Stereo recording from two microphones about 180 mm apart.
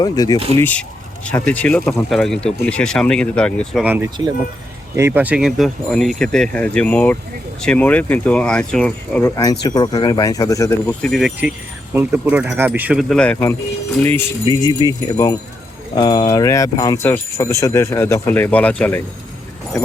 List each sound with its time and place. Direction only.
0.0 s speech: 20° left (ahead or behind)
0.3 s speech: 30° right (ahead or behind)
0.6 s speech: 5° left (ahead or behind)
4.9 s speech: 15° right (ahead or behind); by 9.2 s 5° left (ahead or behind)
9.2 s speech: 20° left (ahead or behind)
11.1 s speech: 5° right (ahead or behind)
14.4 s speech: 25° left (ahead or behind)